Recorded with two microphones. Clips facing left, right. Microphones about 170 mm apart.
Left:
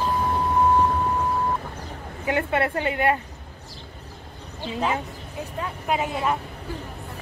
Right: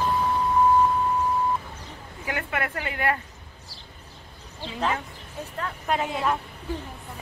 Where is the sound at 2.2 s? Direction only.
30° left (ahead or behind).